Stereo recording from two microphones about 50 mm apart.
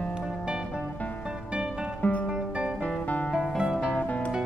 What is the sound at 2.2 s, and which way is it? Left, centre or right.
Music, centre.